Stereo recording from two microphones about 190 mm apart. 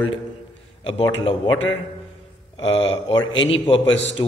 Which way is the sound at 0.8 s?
25° left (ahead or behind).